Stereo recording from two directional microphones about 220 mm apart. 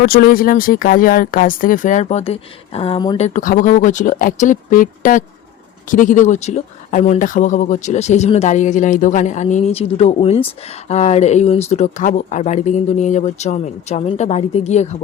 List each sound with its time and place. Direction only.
0.0 s speech: 45° left (ahead or behind); by 3.2 s 20° left (ahead or behind)
3.2 s speech: 35° left (ahead or behind)